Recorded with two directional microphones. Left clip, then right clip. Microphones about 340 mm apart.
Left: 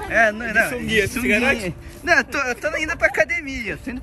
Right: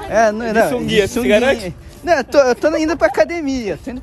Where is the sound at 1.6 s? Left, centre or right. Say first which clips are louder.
Right 2 dB; centre.